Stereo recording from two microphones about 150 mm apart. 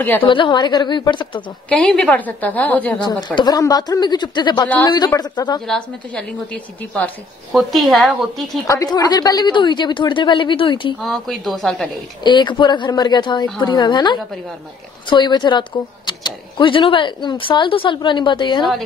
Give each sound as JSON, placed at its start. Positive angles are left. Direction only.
{"t": 0.2, "sound": "speech", "side_deg": 35}
{"t": 1.7, "sound": "a woman's voice", "side_deg": 5}
{"t": 3.0, "sound": "a woman's voice", "side_deg": 25}
{"t": 4.6, "sound": "a woman's voice", "side_deg": 10}
{"t": 4.9, "sound": "a woman's voice", "side_deg": 25}
{"t": 5.7, "sound": "a woman's voice", "side_deg": 5}
{"t": 8.6, "sound": "speech", "side_deg": 25}
{"t": 11.0, "sound": "a woman's voice", "side_deg": 0}
{"t": 12.2, "sound": "a woman's voice", "side_deg": 30}